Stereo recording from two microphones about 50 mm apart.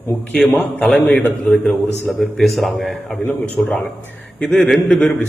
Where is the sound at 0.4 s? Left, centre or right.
Centre.